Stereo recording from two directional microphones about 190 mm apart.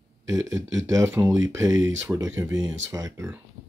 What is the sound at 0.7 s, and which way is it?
Speech, 15° right (ahead or behind).